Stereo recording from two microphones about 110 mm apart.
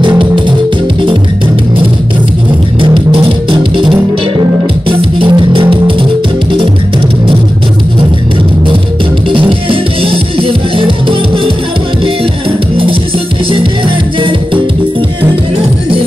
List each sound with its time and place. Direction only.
2.8 s music: 50° right (ahead or behind)
4.8 s music: 50° right (ahead or behind)
9.3 s music: 50° right (ahead or behind)